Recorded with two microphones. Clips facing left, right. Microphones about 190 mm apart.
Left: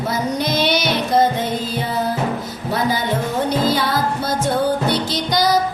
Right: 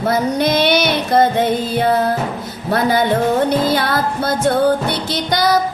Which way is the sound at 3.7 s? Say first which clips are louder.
Right 2 dB; 60° right (ahead or behind).